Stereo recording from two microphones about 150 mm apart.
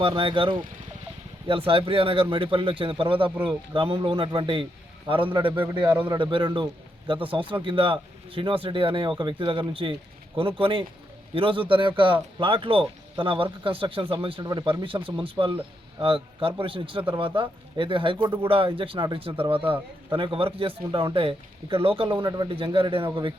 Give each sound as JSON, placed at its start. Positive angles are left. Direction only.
{"t": 0.0, "sound": "a man's voice", "side_deg": -35}